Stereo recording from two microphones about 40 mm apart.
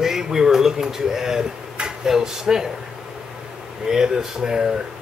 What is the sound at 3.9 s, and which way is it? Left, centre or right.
Speech, centre.